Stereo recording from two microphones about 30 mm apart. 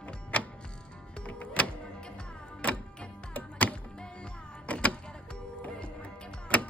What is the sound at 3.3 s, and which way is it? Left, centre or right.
Music, left.